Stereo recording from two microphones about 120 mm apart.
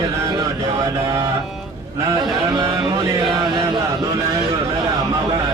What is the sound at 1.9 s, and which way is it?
A man's voice, 30° right (ahead or behind).